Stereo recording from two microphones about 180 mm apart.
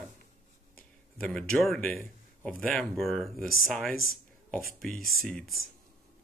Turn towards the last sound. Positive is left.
turn(degrees=0)  # may be behind; listen again after turning